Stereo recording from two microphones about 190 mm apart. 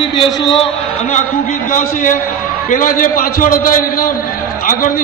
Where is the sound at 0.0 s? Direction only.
25° left (ahead or behind).